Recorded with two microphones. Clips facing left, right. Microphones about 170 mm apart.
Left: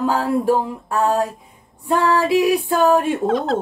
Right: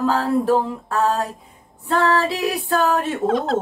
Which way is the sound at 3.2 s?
Centre (ahead or behind).